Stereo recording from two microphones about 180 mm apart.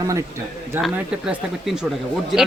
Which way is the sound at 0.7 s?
5° right (ahead or behind).